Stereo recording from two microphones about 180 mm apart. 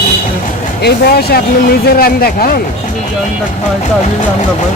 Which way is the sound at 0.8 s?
60° left (ahead or behind).